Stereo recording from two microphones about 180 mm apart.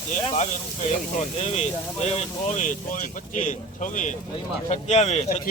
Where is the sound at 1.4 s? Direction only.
35° left (ahead or behind).